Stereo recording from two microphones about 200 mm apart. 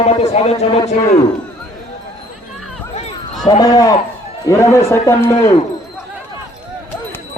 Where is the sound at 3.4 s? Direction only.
20° left (ahead or behind).